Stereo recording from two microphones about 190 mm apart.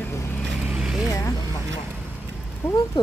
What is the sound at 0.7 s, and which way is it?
Vehicle, 5° right (ahead or behind).